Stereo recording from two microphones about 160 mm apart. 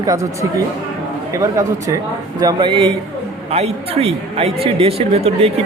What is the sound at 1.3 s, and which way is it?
Speech, 20° right (ahead or behind).